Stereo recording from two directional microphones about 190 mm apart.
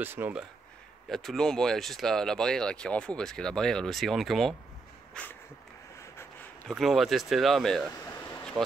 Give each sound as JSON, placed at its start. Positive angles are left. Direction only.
{"t": 0.0, "sound": "speech", "side_deg": -10}
{"t": 5.1, "sound": "a sound", "side_deg": 10}
{"t": 6.7, "sound": "speech", "side_deg": 0}
{"t": 8.6, "sound": "speech", "side_deg": -25}